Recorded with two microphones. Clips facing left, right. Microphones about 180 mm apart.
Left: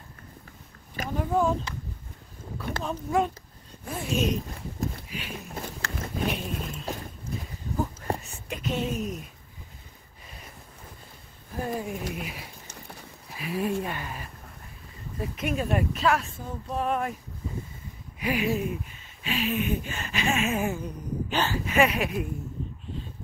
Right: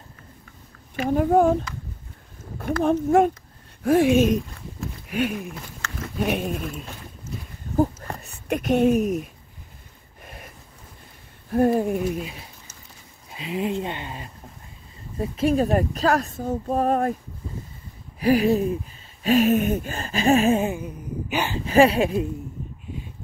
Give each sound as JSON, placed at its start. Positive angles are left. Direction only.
{"t": 1.0, "sound": "speech", "side_deg": -50}
{"t": 2.6, "sound": "speech", "side_deg": -50}
{"t": 3.8, "sound": "speech", "side_deg": -90}
{"t": 4.1, "sound": "speech", "side_deg": -50}
{"t": 5.8, "sound": "a sound", "side_deg": 35}
{"t": 6.1, "sound": "dog", "side_deg": -55}
{"t": 8.2, "sound": "a sound", "side_deg": -65}
{"t": 11.5, "sound": "speech", "side_deg": -50}
{"t": 13.3, "sound": "speech", "side_deg": -20}
{"t": 18.2, "sound": "speech", "side_deg": -35}
{"t": 20.8, "sound": "speech", "side_deg": -10}
{"t": 21.6, "sound": "speech", "side_deg": -30}